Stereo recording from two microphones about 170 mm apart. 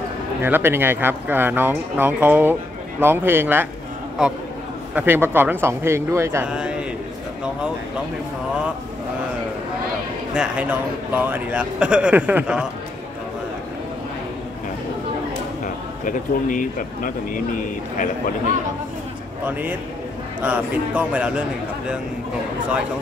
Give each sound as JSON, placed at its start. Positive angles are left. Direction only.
{"t": 0.4, "sound": "a man's voice", "side_deg": -15}
{"t": 10.3, "sound": "a man's voice", "side_deg": -5}
{"t": 16.1, "sound": "speech", "side_deg": 50}
{"t": 20.4, "sound": "a man's voice", "side_deg": -10}